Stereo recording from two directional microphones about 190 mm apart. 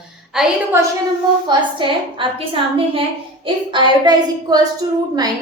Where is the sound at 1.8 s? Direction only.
25° right (ahead or behind).